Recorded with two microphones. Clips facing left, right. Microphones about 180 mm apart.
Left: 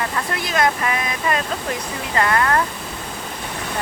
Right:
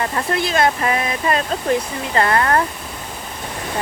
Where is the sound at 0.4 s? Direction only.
30° right (ahead or behind).